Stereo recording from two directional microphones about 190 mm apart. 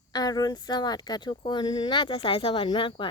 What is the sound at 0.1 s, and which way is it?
Speech, 20° left (ahead or behind).